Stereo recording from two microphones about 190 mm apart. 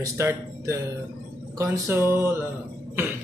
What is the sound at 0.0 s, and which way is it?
Speech, 15° right (ahead or behind).